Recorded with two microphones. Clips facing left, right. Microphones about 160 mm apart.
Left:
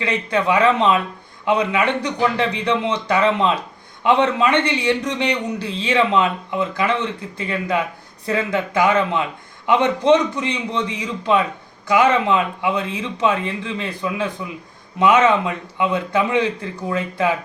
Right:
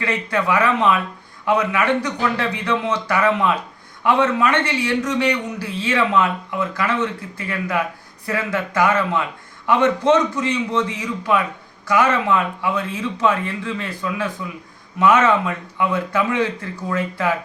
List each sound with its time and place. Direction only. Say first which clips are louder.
0.0 s a man's voice: left 1 dB; 20° left (ahead or behind)